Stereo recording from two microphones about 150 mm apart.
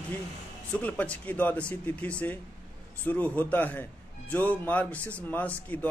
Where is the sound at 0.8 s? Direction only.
10° left (ahead or behind).